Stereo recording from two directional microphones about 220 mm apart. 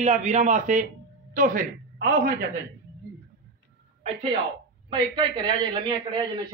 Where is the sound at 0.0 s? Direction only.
30° right (ahead or behind).